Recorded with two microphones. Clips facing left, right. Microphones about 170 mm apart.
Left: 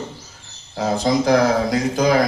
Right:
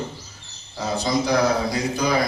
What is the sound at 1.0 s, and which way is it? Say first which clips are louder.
Speech: left 4 dB; 50° left (ahead or behind).